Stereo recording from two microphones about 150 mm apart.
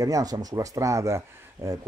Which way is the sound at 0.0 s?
25° right (ahead or behind).